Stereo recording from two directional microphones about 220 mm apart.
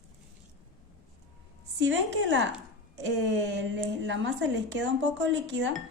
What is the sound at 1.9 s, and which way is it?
Speech, 55° right (ahead or behind).